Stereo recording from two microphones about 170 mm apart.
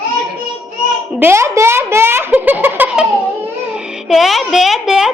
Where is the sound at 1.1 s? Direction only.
15° right (ahead or behind).